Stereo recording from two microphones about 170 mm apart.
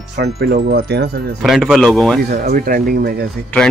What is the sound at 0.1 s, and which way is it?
Speech, 65° right (ahead or behind).